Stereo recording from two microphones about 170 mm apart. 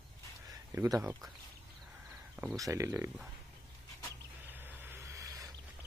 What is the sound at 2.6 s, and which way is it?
Speech, 15° right (ahead or behind).